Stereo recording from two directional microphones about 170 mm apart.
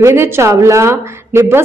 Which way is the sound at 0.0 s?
15° right (ahead or behind).